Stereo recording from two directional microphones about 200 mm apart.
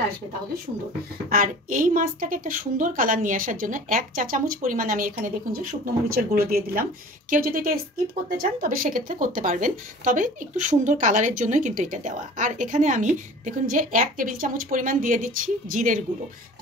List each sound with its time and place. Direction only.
1.3 s a woman's voice: 45° right (ahead or behind)